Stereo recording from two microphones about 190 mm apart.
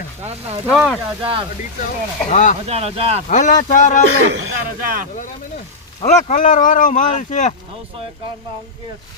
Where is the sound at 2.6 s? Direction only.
35° right (ahead or behind).